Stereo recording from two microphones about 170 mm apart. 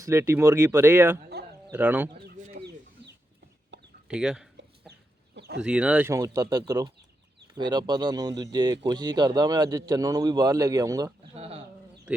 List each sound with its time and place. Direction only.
0.0 s speech: 15° right (ahead or behind)
3.7 s chicken: 90° right
4.1 s speech: 5° right (ahead or behind)
4.5 s chicken: 80° right
5.6 s a man's voice: 5° right (ahead or behind)
11.3 s speech: 35° right (ahead or behind)